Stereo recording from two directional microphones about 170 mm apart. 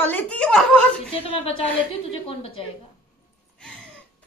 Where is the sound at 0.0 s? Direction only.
10° left (ahead or behind).